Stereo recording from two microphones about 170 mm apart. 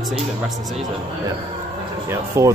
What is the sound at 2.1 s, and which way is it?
Speech, 15° right (ahead or behind).